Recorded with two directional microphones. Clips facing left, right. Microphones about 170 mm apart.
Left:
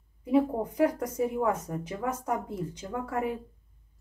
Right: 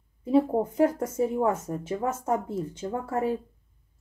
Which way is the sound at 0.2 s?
25° right (ahead or behind).